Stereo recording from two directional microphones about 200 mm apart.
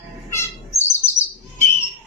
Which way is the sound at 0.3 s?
15° left (ahead or behind).